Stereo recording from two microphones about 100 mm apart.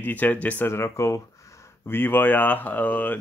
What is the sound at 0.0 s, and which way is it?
Speech, 15° left (ahead or behind).